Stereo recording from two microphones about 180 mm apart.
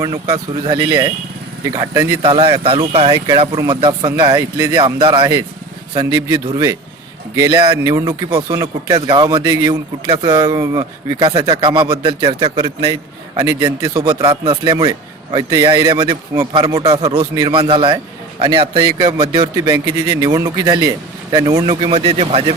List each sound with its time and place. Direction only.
0.0 s speech: 20° right (ahead or behind)
2.2 s speech: 30° right (ahead or behind)
22.2 s speech: 35° right (ahead or behind)